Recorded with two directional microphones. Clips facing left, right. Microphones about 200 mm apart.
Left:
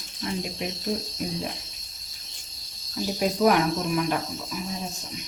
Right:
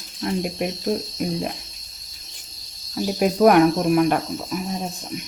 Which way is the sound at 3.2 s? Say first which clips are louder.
Right 7 dB; 55° right (ahead or behind).